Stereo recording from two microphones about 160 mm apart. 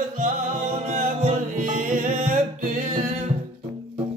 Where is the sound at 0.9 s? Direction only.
50° right (ahead or behind).